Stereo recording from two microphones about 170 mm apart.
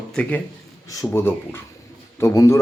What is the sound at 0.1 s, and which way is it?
Speech, 10° left (ahead or behind).